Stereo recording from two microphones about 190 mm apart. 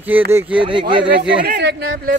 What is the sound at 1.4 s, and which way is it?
Speech, 60° right (ahead or behind).